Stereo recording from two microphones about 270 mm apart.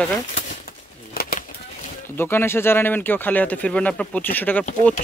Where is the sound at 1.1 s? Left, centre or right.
Left.